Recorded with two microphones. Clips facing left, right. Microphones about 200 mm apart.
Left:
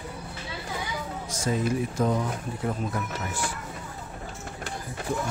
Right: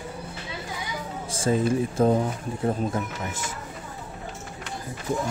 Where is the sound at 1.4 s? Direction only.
30° right (ahead or behind).